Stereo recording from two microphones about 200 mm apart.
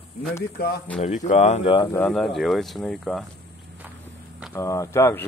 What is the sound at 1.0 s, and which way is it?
Speech, 35° left (ahead or behind).